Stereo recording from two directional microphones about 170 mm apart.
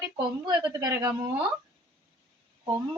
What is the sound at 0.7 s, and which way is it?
Speech, 20° right (ahead or behind).